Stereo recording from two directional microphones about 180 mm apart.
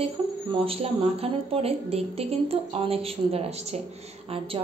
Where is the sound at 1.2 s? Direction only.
35° right (ahead or behind).